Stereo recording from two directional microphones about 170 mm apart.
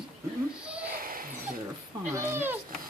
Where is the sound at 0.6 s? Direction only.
5° right (ahead or behind).